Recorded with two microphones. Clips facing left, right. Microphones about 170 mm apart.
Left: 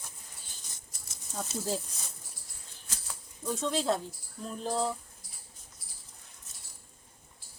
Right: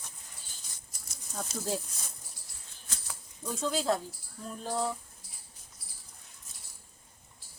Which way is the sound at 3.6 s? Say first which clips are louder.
Right 1 dB; centre (ahead or behind).